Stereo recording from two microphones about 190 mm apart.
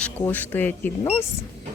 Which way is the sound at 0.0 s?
10° left (ahead or behind).